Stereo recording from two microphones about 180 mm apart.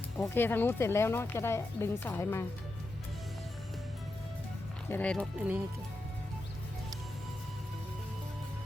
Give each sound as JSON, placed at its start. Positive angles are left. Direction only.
{"t": 0.3, "sound": "a woman's voice", "side_deg": 10}
{"t": 4.9, "sound": "speech", "side_deg": 10}
{"t": 5.4, "sound": "speech", "side_deg": -10}